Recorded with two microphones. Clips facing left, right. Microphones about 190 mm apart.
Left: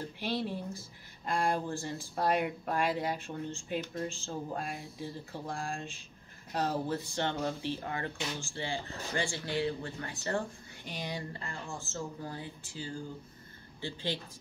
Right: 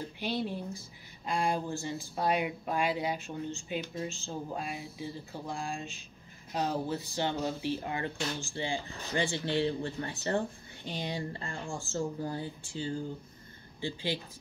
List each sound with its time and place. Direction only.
0.2 s speech: centre (ahead or behind); by 12.9 s 25° right (ahead or behind)
13.7 s speech: 10° right (ahead or behind)